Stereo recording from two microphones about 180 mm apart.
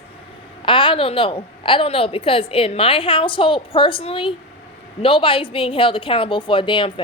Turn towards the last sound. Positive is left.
turn(degrees=25)  # may be behind; listen again after turning